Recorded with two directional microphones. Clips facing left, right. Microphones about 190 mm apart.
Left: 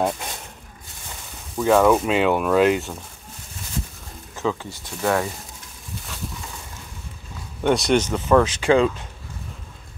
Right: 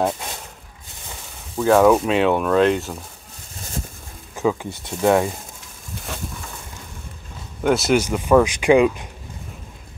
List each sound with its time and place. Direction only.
1.6 s speech: centre (ahead or behind)
4.4 s speech: 15° right (ahead or behind)
7.6 s speech: centre (ahead or behind)